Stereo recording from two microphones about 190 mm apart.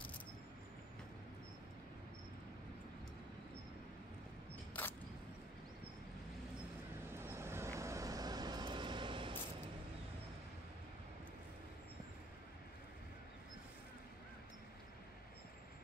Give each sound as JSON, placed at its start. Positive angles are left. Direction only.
{"t": 4.7, "sound": "single-lens reflex camera", "side_deg": 10}
{"t": 7.1, "sound": "vehicle", "side_deg": -15}